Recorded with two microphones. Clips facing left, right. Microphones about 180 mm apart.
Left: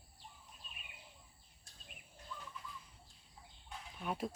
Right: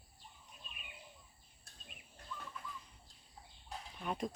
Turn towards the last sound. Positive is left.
turn(degrees=5)  # may be behind; listen again after turning